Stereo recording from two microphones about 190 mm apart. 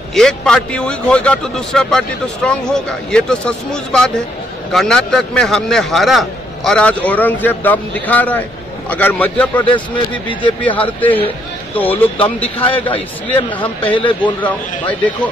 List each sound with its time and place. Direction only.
0.1 s a man's voice: 5° left (ahead or behind)
13.9 s speech: 25° left (ahead or behind)
14.4 s speech: 10° left (ahead or behind)